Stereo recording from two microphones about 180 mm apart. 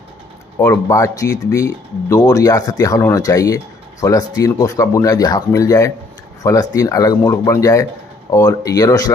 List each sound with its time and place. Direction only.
0.6 s speech: 15° left (ahead or behind)